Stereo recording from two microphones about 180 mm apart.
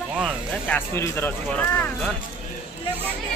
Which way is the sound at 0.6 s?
10° left (ahead or behind).